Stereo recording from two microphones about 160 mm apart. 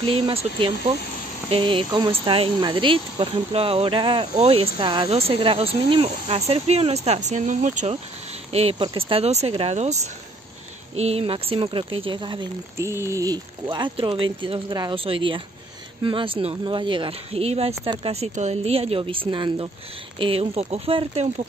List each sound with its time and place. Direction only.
0.0 s speech: 35° right (ahead or behind)
11.0 s speech: 40° right (ahead or behind)
12.7 s speech: 15° right (ahead or behind); by 21.3 s 40° right (ahead or behind)